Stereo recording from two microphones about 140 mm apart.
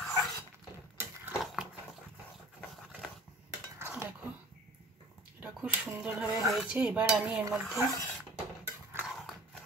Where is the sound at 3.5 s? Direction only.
20° right (ahead or behind).